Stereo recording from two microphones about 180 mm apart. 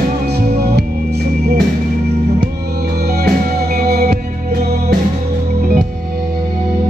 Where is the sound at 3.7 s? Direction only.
55° right (ahead or behind).